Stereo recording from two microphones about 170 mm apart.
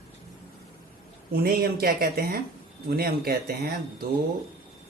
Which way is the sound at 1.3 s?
65° right (ahead or behind).